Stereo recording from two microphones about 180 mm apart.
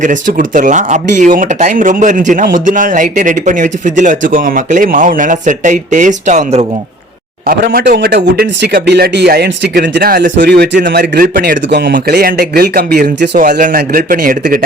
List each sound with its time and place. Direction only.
0.0 s speech: 45° right (ahead or behind)
7.4 s speech: 55° right (ahead or behind)
10.3 s speech: 70° right (ahead or behind); by 14.6 s 50° right (ahead or behind)